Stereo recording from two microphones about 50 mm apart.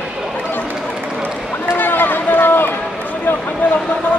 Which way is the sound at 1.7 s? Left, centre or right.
Left.